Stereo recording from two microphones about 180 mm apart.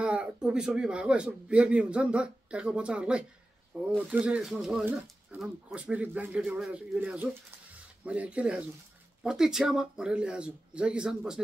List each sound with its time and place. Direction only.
0.0 s speech: 5° right (ahead or behind)